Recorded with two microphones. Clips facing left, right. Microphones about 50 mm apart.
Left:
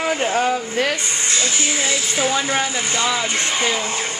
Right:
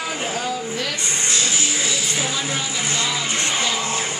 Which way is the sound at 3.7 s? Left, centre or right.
Centre.